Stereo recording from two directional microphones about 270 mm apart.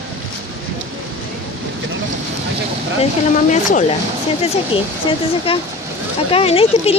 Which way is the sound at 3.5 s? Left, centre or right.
Left.